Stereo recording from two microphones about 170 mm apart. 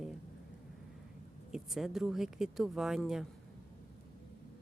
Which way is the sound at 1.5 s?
5° right (ahead or behind).